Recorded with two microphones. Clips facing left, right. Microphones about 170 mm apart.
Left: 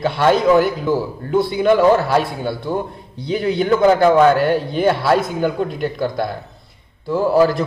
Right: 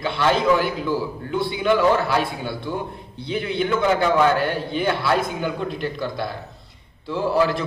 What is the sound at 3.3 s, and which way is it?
A man's voice, 40° left (ahead or behind).